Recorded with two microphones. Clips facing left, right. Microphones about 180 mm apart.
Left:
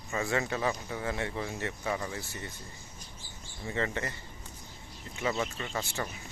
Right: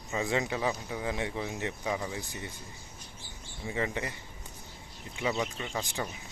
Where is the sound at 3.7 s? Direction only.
15° right (ahead or behind).